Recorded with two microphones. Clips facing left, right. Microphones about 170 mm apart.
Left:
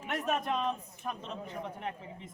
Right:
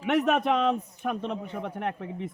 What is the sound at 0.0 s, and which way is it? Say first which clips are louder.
A man's voice: right 9 dB; 70° right (ahead or behind).